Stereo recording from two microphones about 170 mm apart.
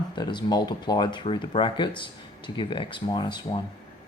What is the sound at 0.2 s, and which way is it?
Speech, 25° left (ahead or behind).